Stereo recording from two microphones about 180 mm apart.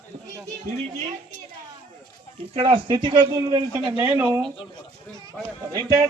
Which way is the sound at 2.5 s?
30° right (ahead or behind).